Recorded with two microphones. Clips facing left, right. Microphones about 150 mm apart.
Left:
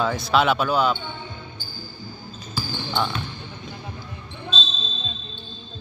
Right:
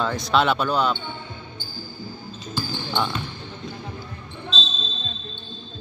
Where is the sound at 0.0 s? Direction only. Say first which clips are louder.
Left 1 dB; 5° left (ahead or behind).